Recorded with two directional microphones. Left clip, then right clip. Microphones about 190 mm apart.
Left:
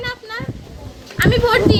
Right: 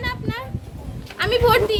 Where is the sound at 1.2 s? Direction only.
60° right (ahead or behind).